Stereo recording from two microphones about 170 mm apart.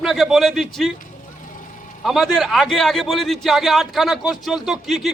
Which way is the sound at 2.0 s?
Centre (ahead or behind).